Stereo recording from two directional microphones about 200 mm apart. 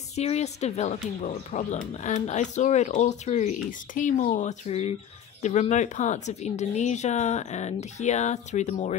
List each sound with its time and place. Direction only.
0.1 s speech: 30° left (ahead or behind)